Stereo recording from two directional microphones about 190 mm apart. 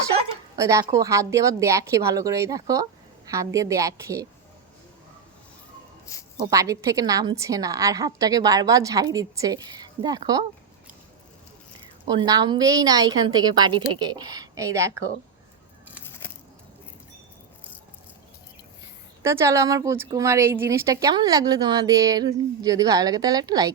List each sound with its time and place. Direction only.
0.5 s speech: 15° right (ahead or behind)
6.4 s a woman's voice: 15° right (ahead or behind)
12.0 s a woman's voice: 20° right (ahead or behind)
16.0 s a sound: 10° left (ahead or behind)
19.2 s a woman's voice: 15° right (ahead or behind)